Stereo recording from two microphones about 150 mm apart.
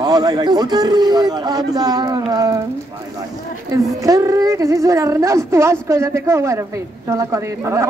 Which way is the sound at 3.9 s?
25° right (ahead or behind).